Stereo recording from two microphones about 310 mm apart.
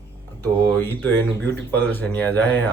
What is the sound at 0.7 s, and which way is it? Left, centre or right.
Speech, centre.